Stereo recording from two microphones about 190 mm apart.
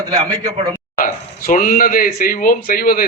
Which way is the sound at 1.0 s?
50° left (ahead or behind).